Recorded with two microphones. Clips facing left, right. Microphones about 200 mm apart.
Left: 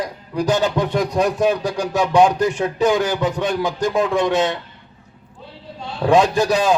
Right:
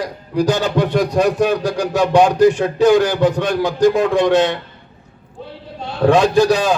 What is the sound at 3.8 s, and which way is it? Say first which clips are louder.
Music: right 6 dB; 60° right (ahead or behind).